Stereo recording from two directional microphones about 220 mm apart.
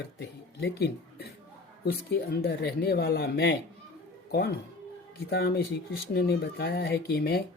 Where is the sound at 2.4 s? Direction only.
45° left (ahead or behind).